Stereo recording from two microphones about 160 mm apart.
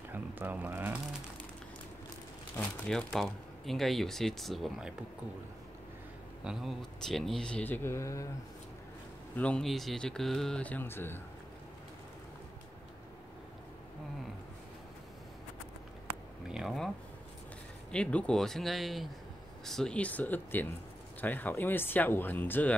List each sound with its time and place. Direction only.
0.1 s a sound: 10° right (ahead or behind)
2.5 s speech: 5° left (ahead or behind)
6.4 s speech: centre (ahead or behind); by 8.3 s 20° left (ahead or behind)
9.4 s speech: 5° left (ahead or behind)
16.4 s speech: centre (ahead or behind)
17.9 s speech: 5° left (ahead or behind)